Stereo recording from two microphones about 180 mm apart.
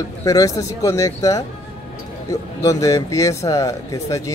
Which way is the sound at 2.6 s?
15° left (ahead or behind).